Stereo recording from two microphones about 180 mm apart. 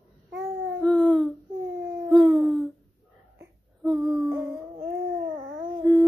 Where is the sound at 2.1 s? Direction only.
Centre (ahead or behind).